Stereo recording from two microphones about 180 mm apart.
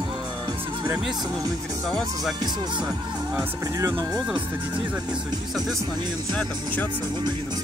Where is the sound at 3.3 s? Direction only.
20° right (ahead or behind).